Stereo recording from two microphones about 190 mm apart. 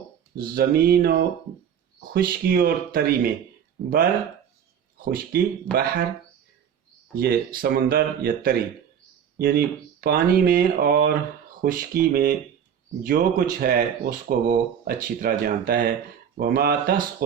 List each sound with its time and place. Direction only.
0.3 s speech: 50° right (ahead or behind)
5.7 s speech: 10° left (ahead or behind)
7.2 s speech: 50° right (ahead or behind)